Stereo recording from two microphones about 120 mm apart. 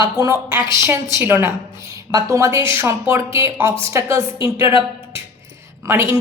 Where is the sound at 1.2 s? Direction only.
20° right (ahead or behind).